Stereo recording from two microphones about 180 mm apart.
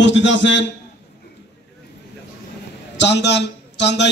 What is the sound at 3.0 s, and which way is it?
A man's voice, 75° left (ahead or behind).